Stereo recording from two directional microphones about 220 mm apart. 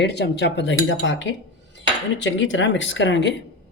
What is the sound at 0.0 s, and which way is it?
Speech, 50° left (ahead or behind).